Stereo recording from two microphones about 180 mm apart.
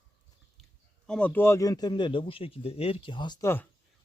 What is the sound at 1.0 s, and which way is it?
Speech, 5° left (ahead or behind).